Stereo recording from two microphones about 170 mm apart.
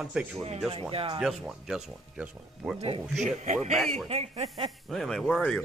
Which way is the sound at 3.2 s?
45° right (ahead or behind).